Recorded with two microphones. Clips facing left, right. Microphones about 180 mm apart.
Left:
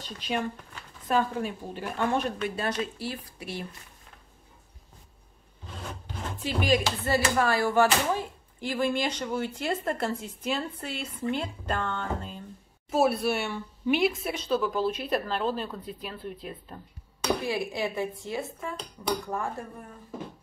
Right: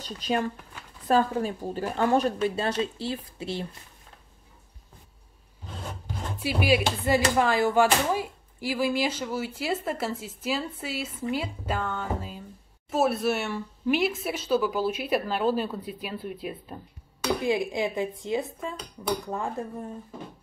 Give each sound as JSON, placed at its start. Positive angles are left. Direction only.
{"t": 0.0, "sound": "a woman's voice", "side_deg": -40}
{"t": 6.3, "sound": "speech", "side_deg": -10}